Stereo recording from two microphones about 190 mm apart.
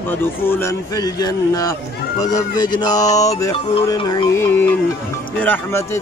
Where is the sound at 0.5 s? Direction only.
15° left (ahead or behind).